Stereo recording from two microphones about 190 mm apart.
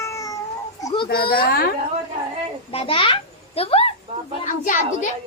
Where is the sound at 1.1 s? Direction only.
50° left (ahead or behind).